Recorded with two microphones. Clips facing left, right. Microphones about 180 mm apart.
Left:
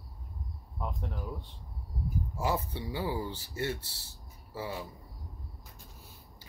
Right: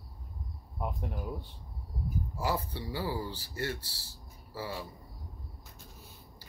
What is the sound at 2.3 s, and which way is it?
Speech, 25° left (ahead or behind).